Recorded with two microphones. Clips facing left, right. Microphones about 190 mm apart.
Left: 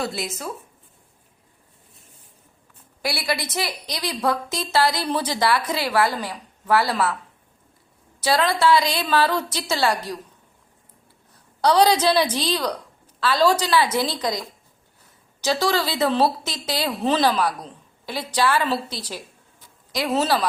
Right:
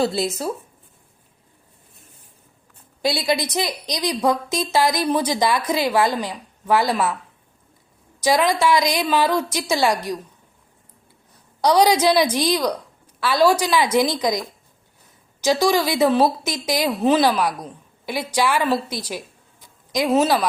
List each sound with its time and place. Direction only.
0.0 s speech: 30° right (ahead or behind)
3.0 s a woman's voice: 20° right (ahead or behind)
8.2 s a woman's voice: 15° right (ahead or behind)
11.6 s a woman's voice: 10° right (ahead or behind)